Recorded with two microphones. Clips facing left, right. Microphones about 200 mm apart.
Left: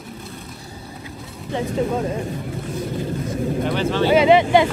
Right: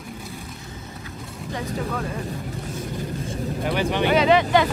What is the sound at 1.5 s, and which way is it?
Speech, 25° left (ahead or behind).